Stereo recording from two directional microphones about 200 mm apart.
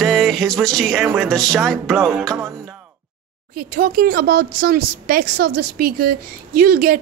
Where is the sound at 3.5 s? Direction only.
50° right (ahead or behind).